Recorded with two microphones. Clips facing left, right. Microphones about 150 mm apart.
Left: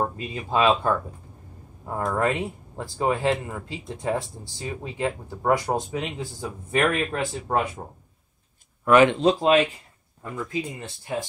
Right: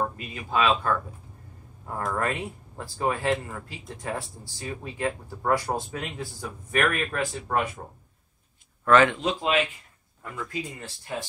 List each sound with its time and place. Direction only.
0.0 s speech: 30° left (ahead or behind)
8.8 s speech: 20° left (ahead or behind)
9.2 s speech: 40° left (ahead or behind)
10.2 s speech: 15° left (ahead or behind)